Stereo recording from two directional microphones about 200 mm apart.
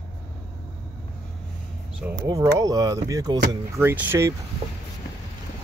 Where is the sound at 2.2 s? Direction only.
15° right (ahead or behind).